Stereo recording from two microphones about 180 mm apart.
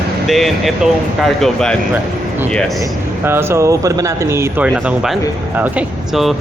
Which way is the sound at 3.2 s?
15° right (ahead or behind).